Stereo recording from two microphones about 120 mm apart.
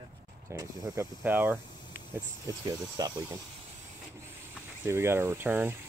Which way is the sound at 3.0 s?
35° right (ahead or behind).